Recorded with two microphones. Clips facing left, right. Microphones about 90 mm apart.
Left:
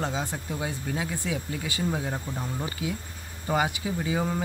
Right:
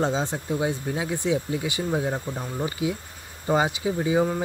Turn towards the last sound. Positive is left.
turn(degrees=-25)  # may be behind; listen again after turning